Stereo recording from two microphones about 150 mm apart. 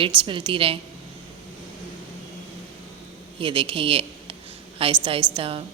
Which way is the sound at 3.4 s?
35° right (ahead or behind).